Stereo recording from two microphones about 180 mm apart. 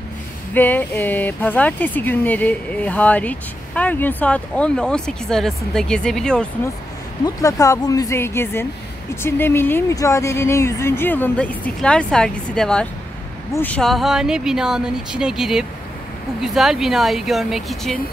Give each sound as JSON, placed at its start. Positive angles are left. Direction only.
{"t": 0.6, "sound": "speech", "side_deg": 10}
{"t": 7.2, "sound": "speech", "side_deg": 20}